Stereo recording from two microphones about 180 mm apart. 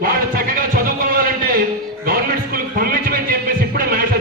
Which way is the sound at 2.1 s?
55° right (ahead or behind).